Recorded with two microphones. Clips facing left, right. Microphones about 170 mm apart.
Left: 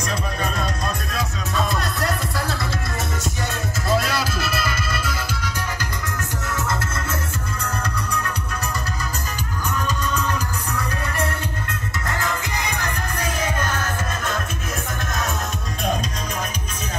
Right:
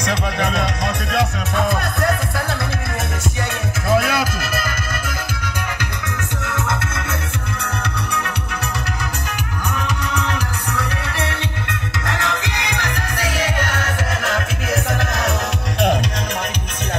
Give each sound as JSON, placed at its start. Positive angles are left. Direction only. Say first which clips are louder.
{"t": 0.0, "sound": "music", "louder": "right 5 dB", "side_deg": -85}
{"t": 3.9, "sound": "music", "louder": "right 4 dB", "side_deg": -60}
{"t": 6.4, "sound": "music", "louder": "right 2 dB", "side_deg": -60}
{"t": 7.8, "sound": "music", "louder": "right 2 dB", "side_deg": -70}
{"t": 9.8, "sound": "music", "louder": "even", "side_deg": -75}